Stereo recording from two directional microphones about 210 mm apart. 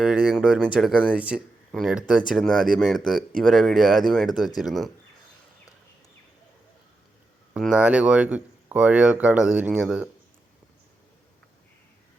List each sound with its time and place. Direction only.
0.0 s speech: 5° right (ahead or behind)
7.5 s speech: 5° right (ahead or behind)